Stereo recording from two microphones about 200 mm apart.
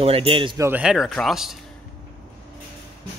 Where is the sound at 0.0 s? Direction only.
30° right (ahead or behind).